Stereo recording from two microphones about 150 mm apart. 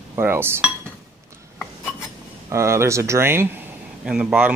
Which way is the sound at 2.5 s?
20° right (ahead or behind).